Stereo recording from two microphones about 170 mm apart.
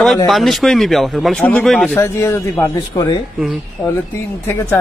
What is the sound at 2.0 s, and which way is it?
Speech, 15° left (ahead or behind).